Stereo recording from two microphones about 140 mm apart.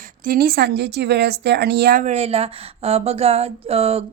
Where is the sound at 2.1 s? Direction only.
45° right (ahead or behind).